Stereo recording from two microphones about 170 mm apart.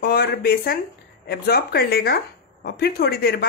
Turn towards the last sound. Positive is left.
turn(degrees=65)  # may be behind; listen again after turning